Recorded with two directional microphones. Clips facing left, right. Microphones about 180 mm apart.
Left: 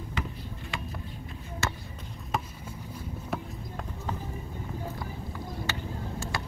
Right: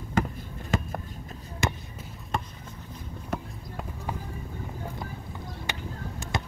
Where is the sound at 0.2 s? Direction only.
45° right (ahead or behind).